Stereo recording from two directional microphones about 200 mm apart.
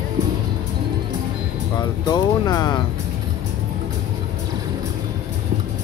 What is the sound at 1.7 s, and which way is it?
Music, 20° left (ahead or behind).